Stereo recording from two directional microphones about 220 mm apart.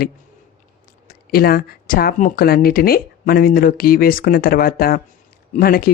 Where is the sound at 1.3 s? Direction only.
45° left (ahead or behind).